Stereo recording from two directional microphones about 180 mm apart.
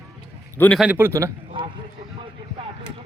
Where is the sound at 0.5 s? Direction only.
10° left (ahead or behind).